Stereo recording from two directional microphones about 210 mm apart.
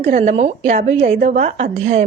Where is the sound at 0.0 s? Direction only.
30° right (ahead or behind).